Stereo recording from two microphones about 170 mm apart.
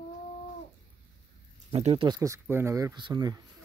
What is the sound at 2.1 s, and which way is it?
Speech, 15° right (ahead or behind).